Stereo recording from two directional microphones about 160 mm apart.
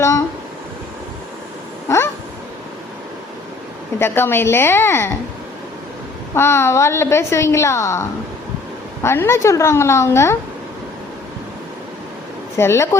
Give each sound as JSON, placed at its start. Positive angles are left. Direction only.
{"t": 1.9, "sound": "a sound", "side_deg": 15}
{"t": 3.9, "sound": "a woman's voice", "side_deg": 15}
{"t": 6.3, "sound": "a woman's voice", "side_deg": 15}
{"t": 9.0, "sound": "a woman's voice", "side_deg": 15}
{"t": 12.5, "sound": "a woman's voice", "side_deg": 15}